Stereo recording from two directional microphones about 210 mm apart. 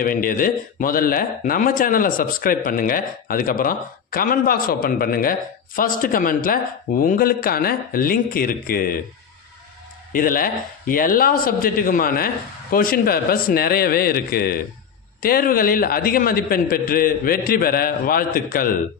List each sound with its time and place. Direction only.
0.0 s speech: 40° left (ahead or behind)
10.1 s speech: 40° left (ahead or behind)